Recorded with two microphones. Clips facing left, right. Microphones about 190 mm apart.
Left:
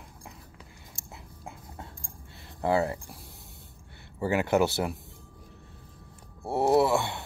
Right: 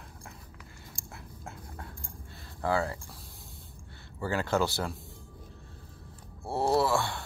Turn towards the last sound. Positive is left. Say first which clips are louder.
# left 4 dB
turn(degrees=20)  # may be behind; listen again after turning